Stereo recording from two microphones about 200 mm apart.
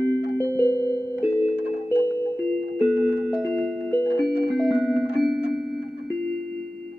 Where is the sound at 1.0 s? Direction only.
15° left (ahead or behind).